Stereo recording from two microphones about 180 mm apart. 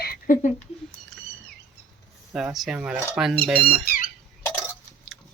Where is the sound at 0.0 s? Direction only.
50° left (ahead or behind).